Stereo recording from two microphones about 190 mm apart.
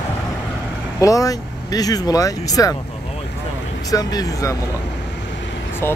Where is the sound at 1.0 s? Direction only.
20° left (ahead or behind).